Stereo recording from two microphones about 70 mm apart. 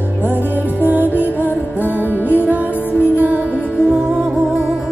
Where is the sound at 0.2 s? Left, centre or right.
Right.